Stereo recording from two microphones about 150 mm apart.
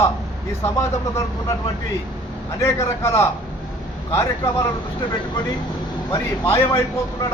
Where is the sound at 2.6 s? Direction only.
20° left (ahead or behind).